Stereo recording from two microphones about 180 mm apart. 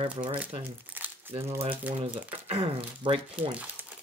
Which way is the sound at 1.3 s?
35° right (ahead or behind).